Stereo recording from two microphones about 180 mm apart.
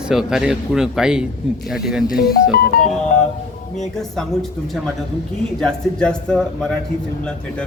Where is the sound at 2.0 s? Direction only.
55° left (ahead or behind).